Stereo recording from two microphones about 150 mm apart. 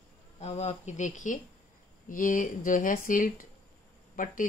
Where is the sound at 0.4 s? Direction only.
45° left (ahead or behind).